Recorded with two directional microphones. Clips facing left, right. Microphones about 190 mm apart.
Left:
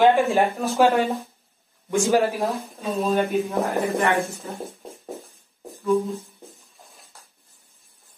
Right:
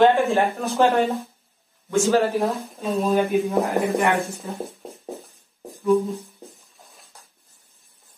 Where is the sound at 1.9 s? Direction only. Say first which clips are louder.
Right 1 dB; 15° left (ahead or behind).